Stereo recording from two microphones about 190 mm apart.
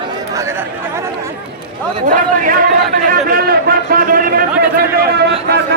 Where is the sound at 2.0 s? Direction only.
45° right (ahead or behind).